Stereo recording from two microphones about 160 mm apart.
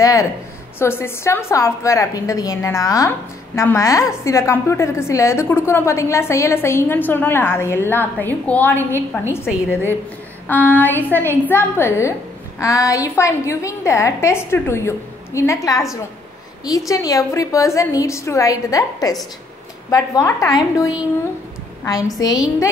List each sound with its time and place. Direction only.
0.0 s a woman's voice: 20° left (ahead or behind)